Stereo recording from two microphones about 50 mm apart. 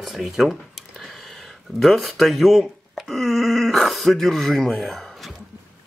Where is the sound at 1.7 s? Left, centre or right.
Centre.